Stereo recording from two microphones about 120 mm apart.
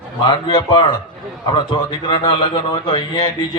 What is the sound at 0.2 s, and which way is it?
A man's voice, 40° left (ahead or behind).